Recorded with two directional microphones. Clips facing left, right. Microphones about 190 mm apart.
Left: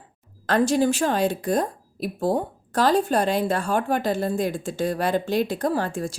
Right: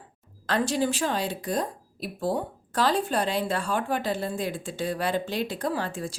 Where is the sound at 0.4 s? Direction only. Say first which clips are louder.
Left 6 dB; 45° left (ahead or behind).